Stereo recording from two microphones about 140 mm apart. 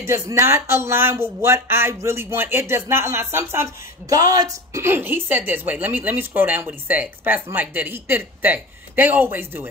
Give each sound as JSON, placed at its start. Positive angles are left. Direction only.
{"t": 0.0, "sound": "speech", "side_deg": -20}